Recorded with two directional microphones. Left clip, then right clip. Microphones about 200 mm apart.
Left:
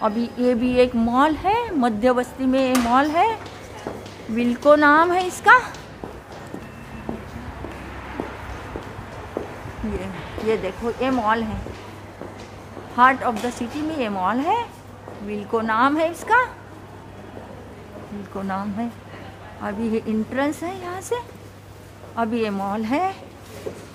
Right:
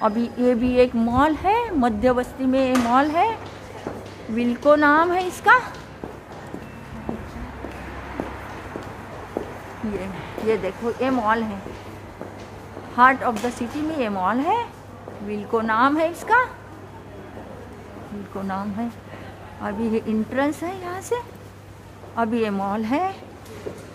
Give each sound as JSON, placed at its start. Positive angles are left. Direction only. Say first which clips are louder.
{"t": 0.0, "sound": "a woman's voice", "louder": "right 1 dB", "side_deg": 5}
{"t": 4.4, "sound": "a woman's voice", "louder": "left 2 dB", "side_deg": 15}
{"t": 7.1, "sound": "music", "louder": "even", "side_deg": 10}
{"t": 9.4, "sound": "a sound", "louder": "even", "side_deg": -45}
{"t": 10.5, "sound": "a woman's voice", "louder": "even", "side_deg": 5}
{"t": 12.9, "sound": "a woman's voice", "louder": "even", "side_deg": 5}
{"t": 18.3, "sound": "a woman's voice", "louder": "left 1 dB", "side_deg": 15}